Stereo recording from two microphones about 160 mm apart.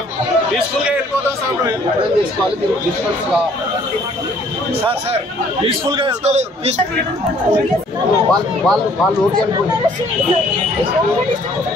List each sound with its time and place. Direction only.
5.7 s a man's voice: 30° right (ahead or behind)
6.2 s a man's voice: 45° right (ahead or behind)
8.3 s speech: centre (ahead or behind)